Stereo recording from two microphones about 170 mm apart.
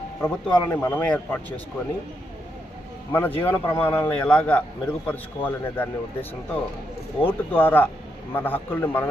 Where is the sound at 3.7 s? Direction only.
15° left (ahead or behind).